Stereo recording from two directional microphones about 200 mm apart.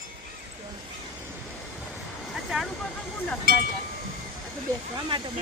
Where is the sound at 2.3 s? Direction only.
Centre (ahead or behind).